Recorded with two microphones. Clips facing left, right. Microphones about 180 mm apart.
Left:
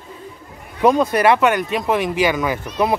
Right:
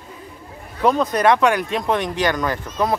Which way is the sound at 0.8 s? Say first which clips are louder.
Left 3 dB; 10° left (ahead or behind).